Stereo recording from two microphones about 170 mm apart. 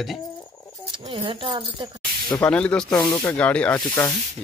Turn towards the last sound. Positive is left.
turn(degrees=10)  # may be behind; listen again after turning